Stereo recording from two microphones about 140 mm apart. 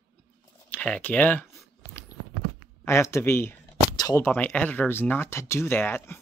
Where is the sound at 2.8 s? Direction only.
20° left (ahead or behind).